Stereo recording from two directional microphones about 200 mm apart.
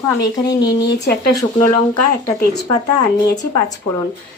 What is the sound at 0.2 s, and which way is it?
Speech, 20° left (ahead or behind).